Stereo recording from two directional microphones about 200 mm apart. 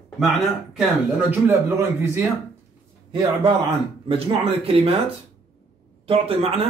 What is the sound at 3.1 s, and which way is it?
Speech, 25° right (ahead or behind).